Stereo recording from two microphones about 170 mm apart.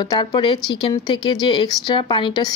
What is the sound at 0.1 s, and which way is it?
Speech, 25° left (ahead or behind).